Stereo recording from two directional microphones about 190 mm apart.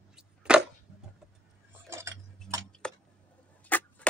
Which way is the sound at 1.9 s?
15° right (ahead or behind).